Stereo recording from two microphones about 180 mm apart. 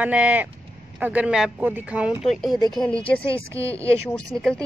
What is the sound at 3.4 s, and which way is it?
Speech, 15° right (ahead or behind).